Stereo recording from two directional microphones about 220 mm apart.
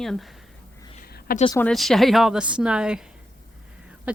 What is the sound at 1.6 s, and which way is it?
Speech, centre (ahead or behind).